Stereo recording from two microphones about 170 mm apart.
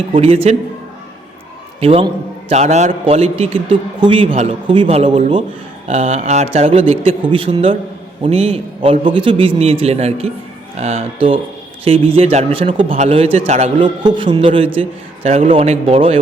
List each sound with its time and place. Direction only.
0.1 s a man's voice: 35° right (ahead or behind)
1.8 s a man's voice: 35° right (ahead or behind)